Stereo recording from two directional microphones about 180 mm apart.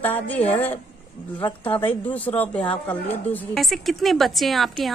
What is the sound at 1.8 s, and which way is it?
A woman's voice, 10° left (ahead or behind).